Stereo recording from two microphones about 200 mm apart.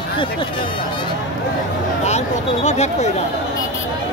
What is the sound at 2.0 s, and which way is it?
Speech, 35° left (ahead or behind).